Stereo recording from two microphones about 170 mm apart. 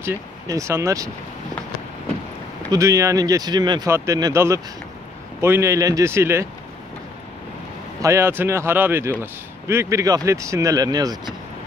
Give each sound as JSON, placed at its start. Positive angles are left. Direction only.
{"t": 0.0, "sound": "speech", "side_deg": -15}
{"t": 2.7, "sound": "speech", "side_deg": -20}
{"t": 8.0, "sound": "speech", "side_deg": -15}